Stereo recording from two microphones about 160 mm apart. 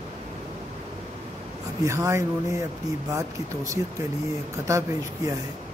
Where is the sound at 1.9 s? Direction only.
20° right (ahead or behind).